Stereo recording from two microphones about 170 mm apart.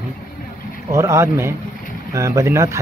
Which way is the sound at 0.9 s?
15° right (ahead or behind).